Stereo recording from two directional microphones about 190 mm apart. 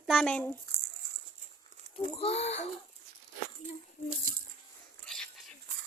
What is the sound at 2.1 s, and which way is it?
Speech, 30° left (ahead or behind).